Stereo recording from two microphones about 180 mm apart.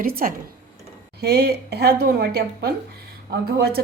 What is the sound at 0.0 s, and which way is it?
A woman's voice, 55° right (ahead or behind).